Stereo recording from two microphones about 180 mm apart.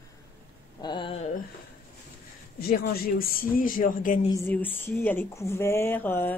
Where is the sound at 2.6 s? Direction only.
60° left (ahead or behind).